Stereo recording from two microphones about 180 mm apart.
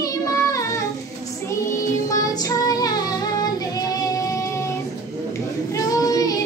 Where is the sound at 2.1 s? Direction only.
20° left (ahead or behind).